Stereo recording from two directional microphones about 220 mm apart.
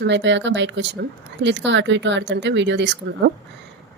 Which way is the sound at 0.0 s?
55° right (ahead or behind).